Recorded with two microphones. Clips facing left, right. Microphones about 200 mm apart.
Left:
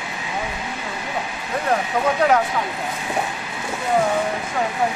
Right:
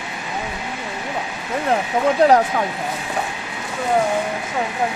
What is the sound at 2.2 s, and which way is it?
Speech, 35° right (ahead or behind).